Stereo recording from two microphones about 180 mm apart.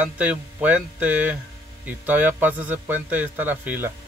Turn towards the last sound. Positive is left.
turn(degrees=-10)  # may be behind; listen again after turning